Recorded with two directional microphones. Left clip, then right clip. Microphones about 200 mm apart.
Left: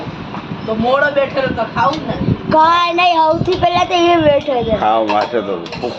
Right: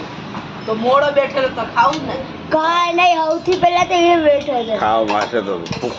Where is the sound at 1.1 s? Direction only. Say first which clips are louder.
Left 1 dB; 5° left (ahead or behind).